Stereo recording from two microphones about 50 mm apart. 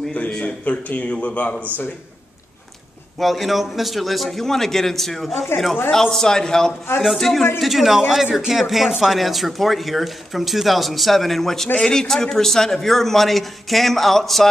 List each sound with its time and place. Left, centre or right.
0.3 s speech: centre
3.2 s a man's voice: centre